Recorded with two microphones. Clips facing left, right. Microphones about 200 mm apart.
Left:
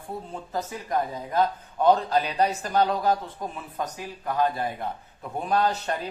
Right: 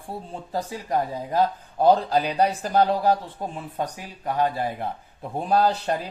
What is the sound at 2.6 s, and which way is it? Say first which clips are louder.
A man's voice: right 3 dB; 35° right (ahead or behind).